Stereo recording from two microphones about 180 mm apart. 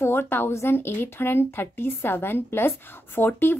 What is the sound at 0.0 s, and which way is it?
A woman's voice, 15° left (ahead or behind).